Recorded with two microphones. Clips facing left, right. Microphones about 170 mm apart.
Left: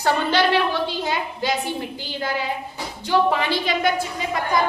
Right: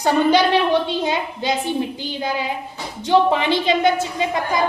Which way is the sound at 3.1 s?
25° right (ahead or behind).